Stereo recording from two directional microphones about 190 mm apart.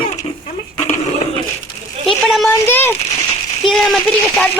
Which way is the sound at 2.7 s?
10° left (ahead or behind).